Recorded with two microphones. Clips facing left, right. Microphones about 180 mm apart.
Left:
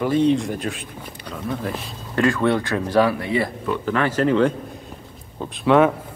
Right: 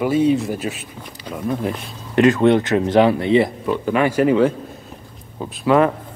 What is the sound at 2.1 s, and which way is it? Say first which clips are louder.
Speech: right 5 dB; 20° right (ahead or behind).